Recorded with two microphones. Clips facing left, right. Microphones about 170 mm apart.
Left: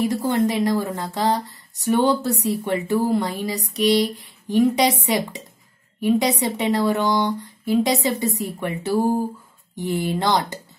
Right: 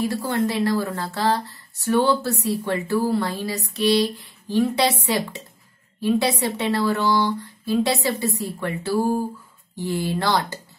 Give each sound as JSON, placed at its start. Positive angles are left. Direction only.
{"t": 0.0, "sound": "speech", "side_deg": 20}